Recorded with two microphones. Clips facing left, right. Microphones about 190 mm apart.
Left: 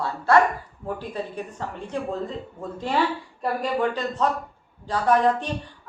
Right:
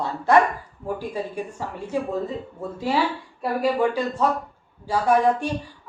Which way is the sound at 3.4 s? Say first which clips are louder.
Right 3 dB; 10° right (ahead or behind).